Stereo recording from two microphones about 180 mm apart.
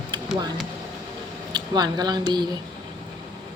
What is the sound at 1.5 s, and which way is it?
Speech, 20° right (ahead or behind).